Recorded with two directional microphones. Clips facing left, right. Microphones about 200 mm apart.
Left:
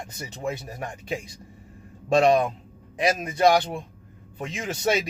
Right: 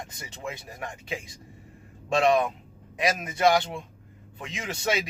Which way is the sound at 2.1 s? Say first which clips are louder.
Left 3 dB; 35° left (ahead or behind).